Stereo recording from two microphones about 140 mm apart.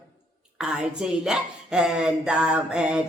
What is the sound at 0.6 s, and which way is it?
Speech, 5° right (ahead or behind).